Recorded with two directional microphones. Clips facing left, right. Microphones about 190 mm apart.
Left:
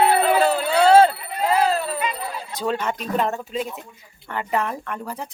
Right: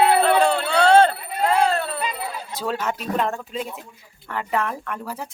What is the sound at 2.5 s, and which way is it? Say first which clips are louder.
Speech: left 2 dB; 5° right (ahead or behind).